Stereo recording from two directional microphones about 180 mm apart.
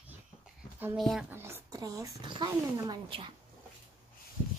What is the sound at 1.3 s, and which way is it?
Speech, 15° right (ahead or behind).